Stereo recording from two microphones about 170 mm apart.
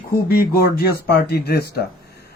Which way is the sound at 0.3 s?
65° left (ahead or behind).